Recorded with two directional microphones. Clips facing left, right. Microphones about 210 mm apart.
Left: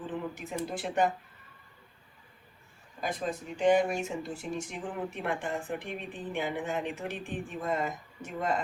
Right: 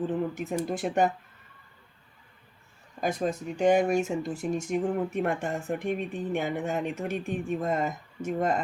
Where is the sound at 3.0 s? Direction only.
45° right (ahead or behind).